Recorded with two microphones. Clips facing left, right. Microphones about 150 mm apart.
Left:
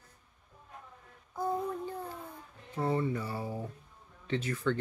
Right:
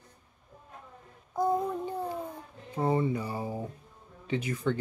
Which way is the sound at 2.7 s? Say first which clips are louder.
Right 3 dB; 15° right (ahead or behind).